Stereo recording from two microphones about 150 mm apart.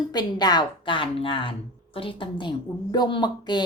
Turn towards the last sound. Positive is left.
turn(degrees=30)  # may be behind; listen again after turning